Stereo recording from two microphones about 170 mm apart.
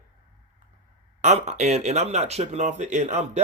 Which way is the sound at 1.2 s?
40° right (ahead or behind).